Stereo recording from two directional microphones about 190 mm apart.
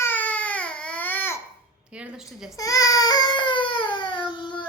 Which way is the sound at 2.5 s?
20° left (ahead or behind).